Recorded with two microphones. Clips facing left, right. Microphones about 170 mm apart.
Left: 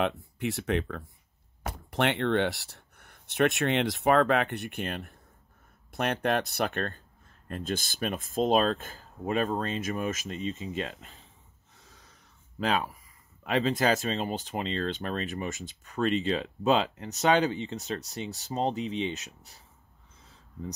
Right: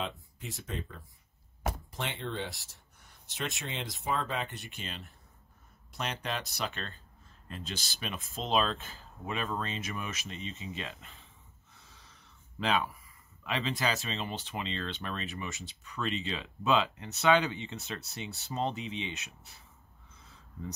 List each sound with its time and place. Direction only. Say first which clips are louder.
0.4 s speech: left 12 dB; 70° left (ahead or behind); by 11.2 s 40° left (ahead or behind)
11.8 s a sound: left 3 dB; 45° left (ahead or behind)
13.4 s speech: left 7 dB; 45° left (ahead or behind)